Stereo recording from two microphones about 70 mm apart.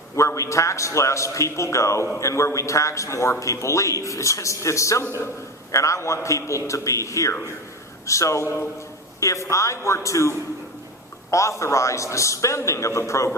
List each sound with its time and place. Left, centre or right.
0.2 s a man's voice: left